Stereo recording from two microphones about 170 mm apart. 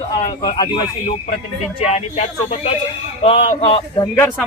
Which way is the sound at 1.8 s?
40° left (ahead or behind).